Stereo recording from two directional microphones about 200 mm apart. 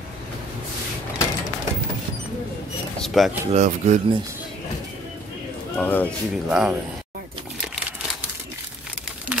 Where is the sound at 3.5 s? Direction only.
35° right (ahead or behind).